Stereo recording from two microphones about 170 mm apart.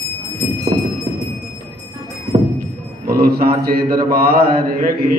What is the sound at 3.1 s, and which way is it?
Mantra, 60° right (ahead or behind).